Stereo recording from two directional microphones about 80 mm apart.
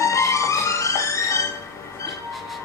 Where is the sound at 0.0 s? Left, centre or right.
Left.